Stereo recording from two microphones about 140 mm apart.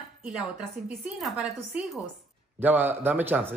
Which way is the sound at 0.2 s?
5° right (ahead or behind).